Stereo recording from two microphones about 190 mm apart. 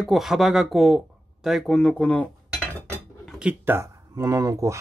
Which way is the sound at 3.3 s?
5° right (ahead or behind).